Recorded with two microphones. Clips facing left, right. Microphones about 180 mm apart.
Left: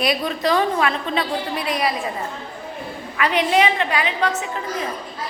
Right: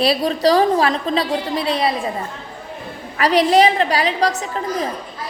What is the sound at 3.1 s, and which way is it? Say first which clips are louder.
A woman's voice: right 5 dB; 35° right (ahead or behind).